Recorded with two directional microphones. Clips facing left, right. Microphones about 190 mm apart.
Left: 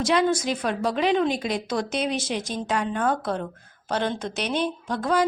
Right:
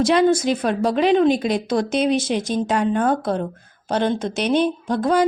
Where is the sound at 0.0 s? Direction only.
30° right (ahead or behind).